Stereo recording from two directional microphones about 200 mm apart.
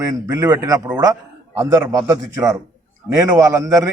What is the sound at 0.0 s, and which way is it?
A man's voice, 20° right (ahead or behind).